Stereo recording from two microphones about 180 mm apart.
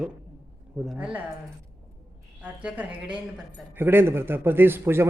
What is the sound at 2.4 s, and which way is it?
A woman's voice, 10° right (ahead or behind).